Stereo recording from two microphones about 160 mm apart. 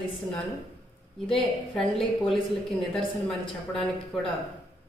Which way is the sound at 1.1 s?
5° left (ahead or behind).